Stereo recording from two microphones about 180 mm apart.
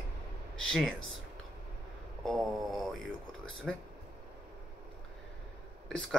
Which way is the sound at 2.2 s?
Centre (ahead or behind).